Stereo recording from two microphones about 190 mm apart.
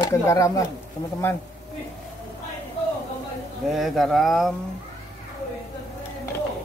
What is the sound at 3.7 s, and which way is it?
Speech, centre (ahead or behind).